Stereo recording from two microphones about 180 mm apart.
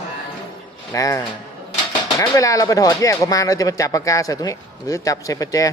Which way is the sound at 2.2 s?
15° left (ahead or behind).